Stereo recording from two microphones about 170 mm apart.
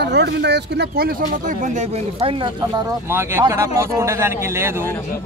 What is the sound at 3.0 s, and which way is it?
A man's voice, 15° right (ahead or behind).